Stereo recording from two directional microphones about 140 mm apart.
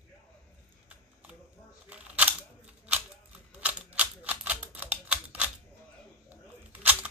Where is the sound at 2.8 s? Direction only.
10° right (ahead or behind).